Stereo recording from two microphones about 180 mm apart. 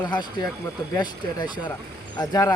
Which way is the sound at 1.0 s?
25° left (ahead or behind).